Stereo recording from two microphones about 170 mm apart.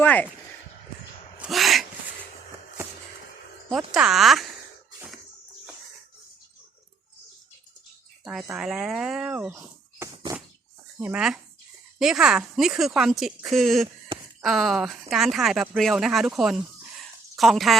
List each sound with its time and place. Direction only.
0.0 s speech: 10° left (ahead or behind)
1.4 s a sound: centre (ahead or behind)
3.7 s speech: 5° right (ahead or behind)
8.2 s speech: centre (ahead or behind)
9.5 s a sound: 20° right (ahead or behind)
11.0 s speech: 5° right (ahead or behind)